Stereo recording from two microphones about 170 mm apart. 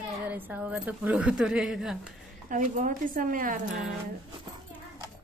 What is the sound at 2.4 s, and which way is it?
Speech, 50° right (ahead or behind).